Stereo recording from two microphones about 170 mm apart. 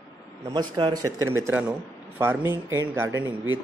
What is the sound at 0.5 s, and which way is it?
Speech, 25° right (ahead or behind).